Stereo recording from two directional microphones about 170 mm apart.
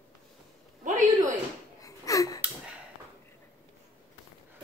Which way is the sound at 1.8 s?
20° left (ahead or behind).